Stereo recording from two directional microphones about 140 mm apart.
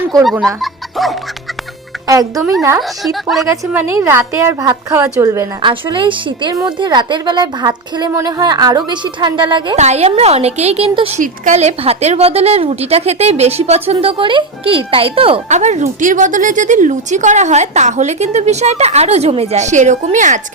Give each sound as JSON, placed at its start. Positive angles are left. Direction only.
{"t": 0.2, "sound": "speech", "side_deg": 0}
{"t": 2.0, "sound": "a woman's voice", "side_deg": -25}
{"t": 2.7, "sound": "speech", "side_deg": 0}
{"t": 3.7, "sound": "a woman's voice", "side_deg": -15}
{"t": 5.6, "sound": "a woman's voice", "side_deg": -35}
{"t": 9.7, "sound": "a woman's voice", "side_deg": -55}
{"t": 11.2, "sound": "a woman's voice", "side_deg": -60}
{"t": 15.4, "sound": "speech", "side_deg": -55}